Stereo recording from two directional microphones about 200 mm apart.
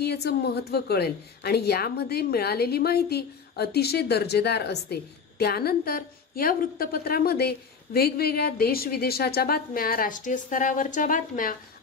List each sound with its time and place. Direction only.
0.0 s a woman's voice: 55° left (ahead or behind)